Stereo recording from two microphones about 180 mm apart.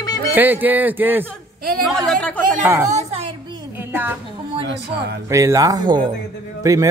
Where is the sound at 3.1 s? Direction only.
35° right (ahead or behind).